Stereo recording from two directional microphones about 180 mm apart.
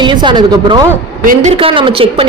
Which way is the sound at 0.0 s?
25° right (ahead or behind).